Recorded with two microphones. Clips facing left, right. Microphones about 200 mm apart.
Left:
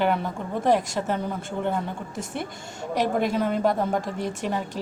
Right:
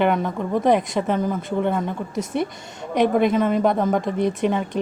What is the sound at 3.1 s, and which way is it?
Speech, 75° right (ahead or behind).